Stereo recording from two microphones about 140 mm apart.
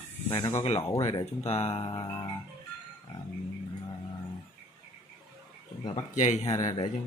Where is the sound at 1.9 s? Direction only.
30° left (ahead or behind).